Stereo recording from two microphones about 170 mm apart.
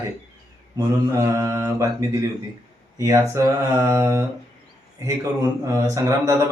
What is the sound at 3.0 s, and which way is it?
Mantra, 20° right (ahead or behind).